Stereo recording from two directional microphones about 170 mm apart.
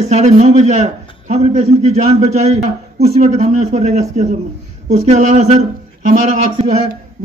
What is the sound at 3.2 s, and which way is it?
Speech, 45° right (ahead or behind).